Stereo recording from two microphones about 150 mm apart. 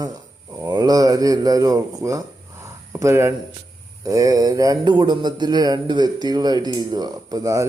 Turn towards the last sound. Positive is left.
turn(degrees=-20)  # may be behind; listen again after turning